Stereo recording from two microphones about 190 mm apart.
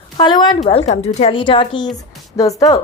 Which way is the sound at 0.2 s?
25° left (ahead or behind).